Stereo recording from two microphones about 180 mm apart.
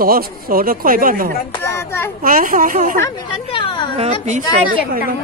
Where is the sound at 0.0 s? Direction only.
55° right (ahead or behind).